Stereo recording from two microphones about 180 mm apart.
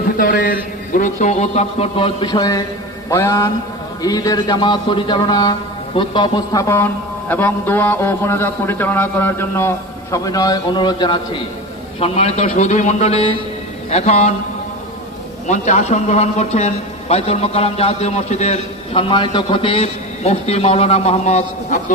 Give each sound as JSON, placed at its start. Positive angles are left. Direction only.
{"t": 0.2, "sound": "a man's voice", "side_deg": 50}
{"t": 15.4, "sound": "a man's voice", "side_deg": 40}